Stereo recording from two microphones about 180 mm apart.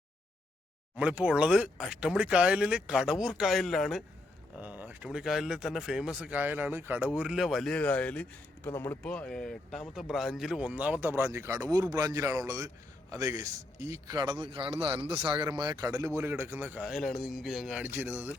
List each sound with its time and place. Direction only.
0.9 s a man's voice: 5° right (ahead or behind)
14.4 s speech: 30° right (ahead or behind); by 18.3 s 10° right (ahead or behind)